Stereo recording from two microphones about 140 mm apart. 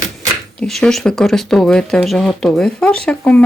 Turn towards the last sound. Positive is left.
turn(degrees=10)  # may be behind; listen again after turning